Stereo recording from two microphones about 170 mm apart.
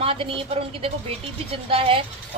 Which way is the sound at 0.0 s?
30° right (ahead or behind).